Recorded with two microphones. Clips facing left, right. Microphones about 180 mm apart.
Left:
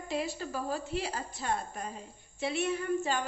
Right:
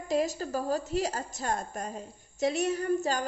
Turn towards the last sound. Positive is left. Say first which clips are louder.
# right 3 dB
turn(degrees=-40)  # may be behind; listen again after turning